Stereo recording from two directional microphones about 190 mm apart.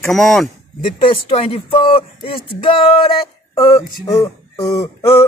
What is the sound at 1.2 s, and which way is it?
Speech, 30° left (ahead or behind).